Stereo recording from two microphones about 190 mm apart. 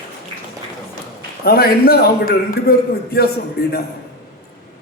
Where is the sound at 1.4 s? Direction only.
55° left (ahead or behind).